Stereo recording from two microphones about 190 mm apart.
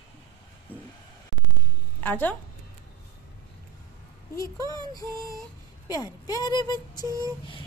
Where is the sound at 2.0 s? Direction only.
10° left (ahead or behind).